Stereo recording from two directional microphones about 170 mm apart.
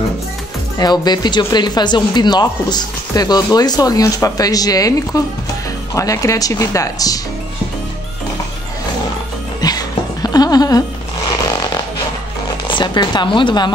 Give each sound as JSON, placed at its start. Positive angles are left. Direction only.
{"t": 0.7, "sound": "speech", "side_deg": 25}
{"t": 9.6, "sound": "music", "side_deg": 25}
{"t": 12.6, "sound": "speech", "side_deg": 25}